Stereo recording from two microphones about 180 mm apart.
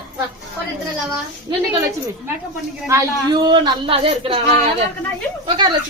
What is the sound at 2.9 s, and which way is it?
A woman's voice, 25° right (ahead or behind).